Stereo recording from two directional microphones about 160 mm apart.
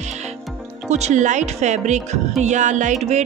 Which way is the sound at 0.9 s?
45° right (ahead or behind).